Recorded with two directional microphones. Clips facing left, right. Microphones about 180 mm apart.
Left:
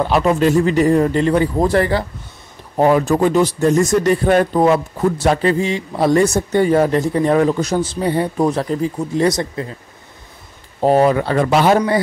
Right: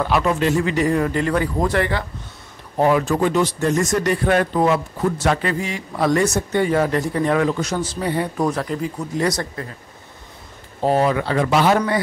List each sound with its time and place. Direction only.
0.0 s a man's voice: 30° left (ahead or behind)
10.8 s speech: 40° left (ahead or behind)